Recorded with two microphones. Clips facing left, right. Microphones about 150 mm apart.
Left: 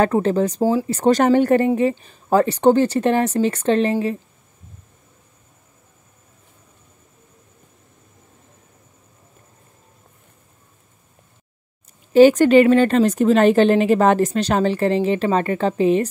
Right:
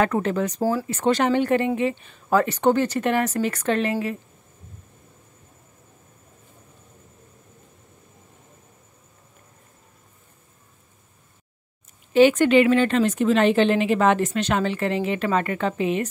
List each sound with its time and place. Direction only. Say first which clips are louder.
0.0 s a woman's voice: left 5 dB; 30° left (ahead or behind)
0.6 s speech: left 5 dB; 20° left (ahead or behind)
0.8 s a woman's voice: left 6 dB; 35° left (ahead or behind)
12.1 s a woman's voice: left 5 dB; 40° left (ahead or behind)